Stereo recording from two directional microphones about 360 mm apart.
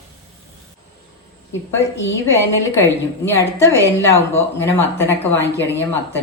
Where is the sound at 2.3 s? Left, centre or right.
Centre.